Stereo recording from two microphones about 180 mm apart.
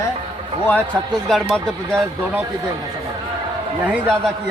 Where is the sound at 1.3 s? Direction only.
Centre (ahead or behind).